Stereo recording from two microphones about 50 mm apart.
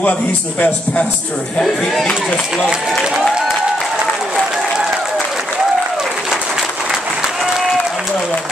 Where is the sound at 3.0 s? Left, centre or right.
Centre.